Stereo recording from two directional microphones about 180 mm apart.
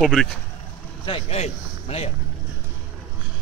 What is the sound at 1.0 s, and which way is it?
A man's voice, 35° left (ahead or behind).